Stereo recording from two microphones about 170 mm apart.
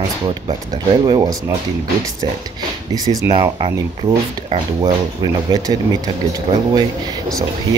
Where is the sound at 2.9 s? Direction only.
20° right (ahead or behind).